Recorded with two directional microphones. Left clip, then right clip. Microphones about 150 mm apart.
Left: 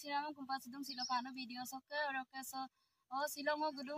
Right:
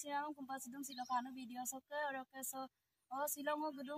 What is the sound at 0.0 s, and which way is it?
A woman's voice, centre (ahead or behind).